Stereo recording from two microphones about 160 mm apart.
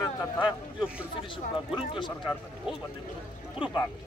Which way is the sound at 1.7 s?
30° left (ahead or behind).